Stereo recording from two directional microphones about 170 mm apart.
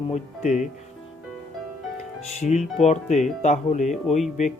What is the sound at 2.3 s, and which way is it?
Speech, 40° left (ahead or behind).